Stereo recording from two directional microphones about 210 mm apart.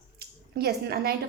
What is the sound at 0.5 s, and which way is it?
Speech, 50° right (ahead or behind).